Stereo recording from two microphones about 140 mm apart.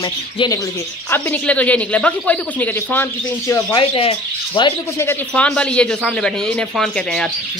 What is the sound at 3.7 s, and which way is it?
Speech, 40° left (ahead or behind).